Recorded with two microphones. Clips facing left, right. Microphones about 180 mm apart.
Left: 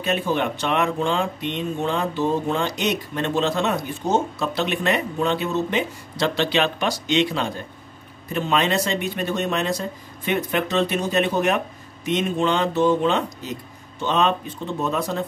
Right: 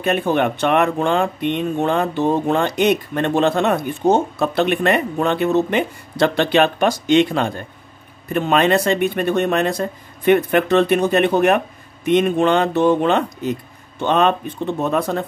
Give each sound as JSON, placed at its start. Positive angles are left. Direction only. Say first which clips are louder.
{"t": 0.0, "sound": "speech", "louder": "right 5 dB", "side_deg": -55}